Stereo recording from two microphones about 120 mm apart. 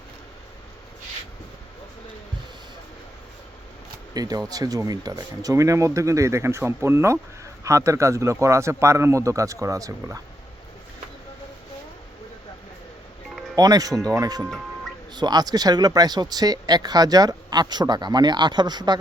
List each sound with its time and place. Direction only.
4.1 s speech: 30° right (ahead or behind)
13.6 s speech: 30° right (ahead or behind)